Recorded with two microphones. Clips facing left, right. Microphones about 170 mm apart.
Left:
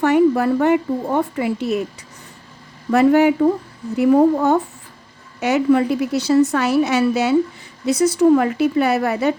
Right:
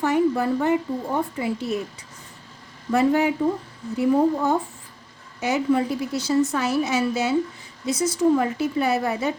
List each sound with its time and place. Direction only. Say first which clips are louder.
0.0 s a woman's voice: left 6 dB; 70° left (ahead or behind)
2.9 s a woman's voice: left 6 dB; 70° left (ahead or behind)